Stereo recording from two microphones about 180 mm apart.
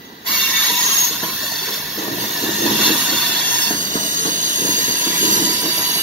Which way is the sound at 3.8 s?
45° right (ahead or behind).